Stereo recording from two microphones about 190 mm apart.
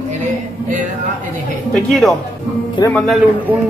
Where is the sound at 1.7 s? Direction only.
Centre (ahead or behind).